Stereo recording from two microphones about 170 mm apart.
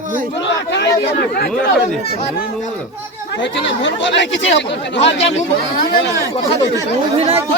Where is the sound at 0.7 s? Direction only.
90° left.